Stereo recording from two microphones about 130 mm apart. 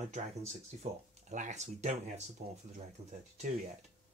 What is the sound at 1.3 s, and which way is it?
Speech, 65° right (ahead or behind).